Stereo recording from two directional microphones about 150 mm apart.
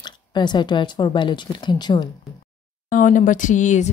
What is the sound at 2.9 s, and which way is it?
Speech, 60° left (ahead or behind).